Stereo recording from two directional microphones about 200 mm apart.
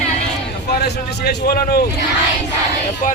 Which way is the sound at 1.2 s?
50° left (ahead or behind).